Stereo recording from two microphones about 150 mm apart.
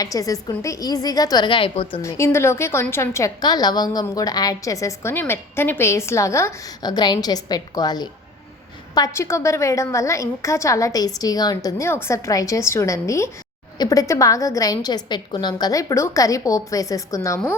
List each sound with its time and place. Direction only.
0.0 s a woman's voice: 25° left (ahead or behind)
2.0 s a woman's voice: 20° left (ahead or behind)